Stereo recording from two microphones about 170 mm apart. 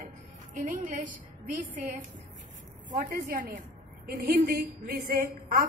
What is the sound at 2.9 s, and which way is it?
A woman's voice, 55° right (ahead or behind).